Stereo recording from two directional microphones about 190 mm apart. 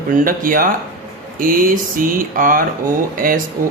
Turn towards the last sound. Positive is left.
turn(degrees=-50)  # may be behind; listen again after turning